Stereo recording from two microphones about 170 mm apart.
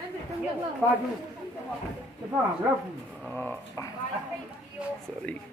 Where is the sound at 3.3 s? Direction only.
15° left (ahead or behind).